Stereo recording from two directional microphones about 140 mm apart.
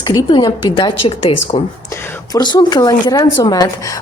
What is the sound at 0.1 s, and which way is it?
A woman's voice, 30° left (ahead or behind).